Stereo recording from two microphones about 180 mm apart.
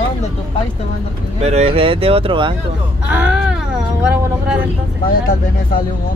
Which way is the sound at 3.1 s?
5° right (ahead or behind).